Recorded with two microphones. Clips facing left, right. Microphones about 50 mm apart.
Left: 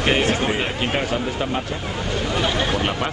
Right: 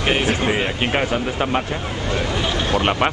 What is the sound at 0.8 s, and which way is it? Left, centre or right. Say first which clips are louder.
Speech: right 2 dB; right.